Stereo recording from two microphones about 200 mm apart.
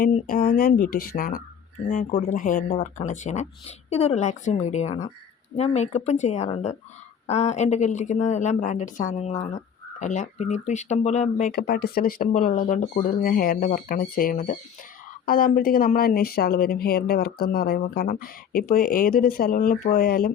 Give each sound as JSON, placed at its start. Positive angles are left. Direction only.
{"t": 0.0, "sound": "a woman's voice", "side_deg": 45}